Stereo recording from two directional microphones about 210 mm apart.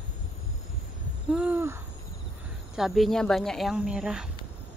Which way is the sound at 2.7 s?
Centre (ahead or behind).